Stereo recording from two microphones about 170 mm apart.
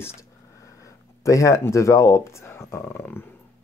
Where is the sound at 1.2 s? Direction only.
20° left (ahead or behind).